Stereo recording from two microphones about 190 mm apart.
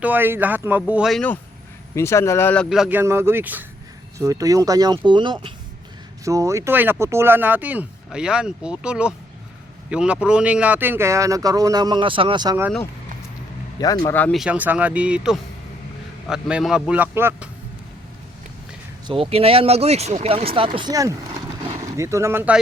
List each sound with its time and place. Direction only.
0.0 s speech: 10° right (ahead or behind)
2.0 s speech: 15° left (ahead or behind)
2.6 s speech: centre (ahead or behind)
3.0 s speech: 15° right (ahead or behind)
13.7 s speech: 20° left (ahead or behind)
14.2 s speech: 5° left (ahead or behind)
14.4 s speech: 10° right (ahead or behind)
19.0 s speech: 30° right (ahead or behind); by 22.5 s 10° right (ahead or behind)